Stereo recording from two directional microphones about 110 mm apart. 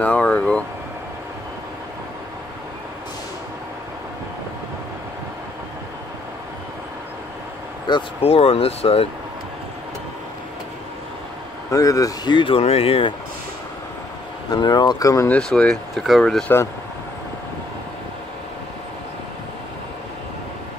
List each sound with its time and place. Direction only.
0.0 s speech: 15° left (ahead or behind)
8.2 s speech: 60° left (ahead or behind)
11.7 s speech: 30° left (ahead or behind)
12.3 s speech: 50° left (ahead or behind)
14.5 s speech: 40° left (ahead or behind)
15.2 s speech: 10° left (ahead or behind)